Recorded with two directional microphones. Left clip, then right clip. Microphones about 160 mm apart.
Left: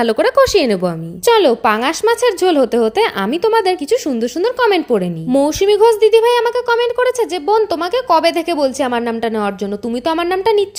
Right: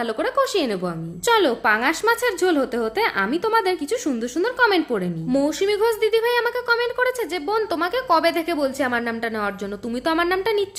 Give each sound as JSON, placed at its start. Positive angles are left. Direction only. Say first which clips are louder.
{"t": 0.0, "sound": "a woman's voice", "louder": "left 10 dB", "side_deg": 45}